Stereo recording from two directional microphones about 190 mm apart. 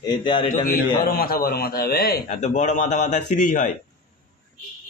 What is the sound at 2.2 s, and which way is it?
A man's voice, 40° left (ahead or behind).